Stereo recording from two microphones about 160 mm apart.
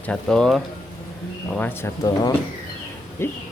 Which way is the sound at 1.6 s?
20° left (ahead or behind).